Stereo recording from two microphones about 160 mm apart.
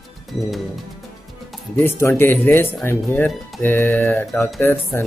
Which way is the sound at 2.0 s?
15° left (ahead or behind).